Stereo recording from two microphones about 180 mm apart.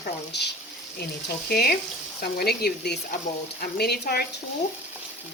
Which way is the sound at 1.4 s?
60° left (ahead or behind).